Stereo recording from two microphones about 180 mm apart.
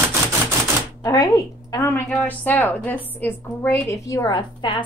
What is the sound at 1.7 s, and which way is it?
A woman's voice, 10° left (ahead or behind).